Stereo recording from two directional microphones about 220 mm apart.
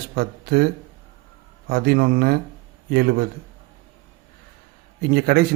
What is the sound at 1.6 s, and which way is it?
Speech, 45° right (ahead or behind).